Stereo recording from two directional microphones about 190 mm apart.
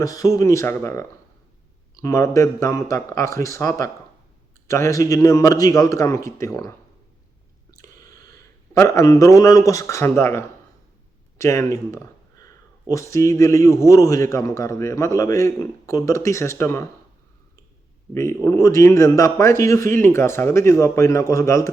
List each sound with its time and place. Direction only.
0.0 s a man's voice: 20° left (ahead or behind)
7.7 s a sound: 15° left (ahead or behind)
8.7 s a man's voice: 15° left (ahead or behind)
18.1 s a man's voice: 15° left (ahead or behind)